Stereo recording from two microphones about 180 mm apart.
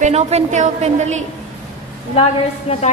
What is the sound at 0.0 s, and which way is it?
A woman's voice, 35° right (ahead or behind).